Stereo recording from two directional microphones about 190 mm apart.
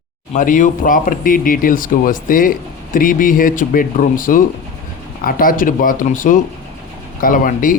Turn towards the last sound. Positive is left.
turn(degrees=45)  # may be behind; listen again after turning